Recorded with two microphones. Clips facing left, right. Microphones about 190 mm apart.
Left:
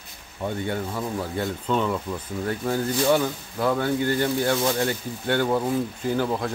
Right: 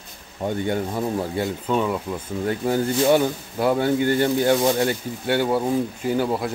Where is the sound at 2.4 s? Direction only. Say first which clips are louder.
Right 4 dB; 20° right (ahead or behind).